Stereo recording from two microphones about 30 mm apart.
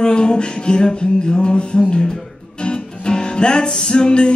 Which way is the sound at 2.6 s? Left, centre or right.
Left.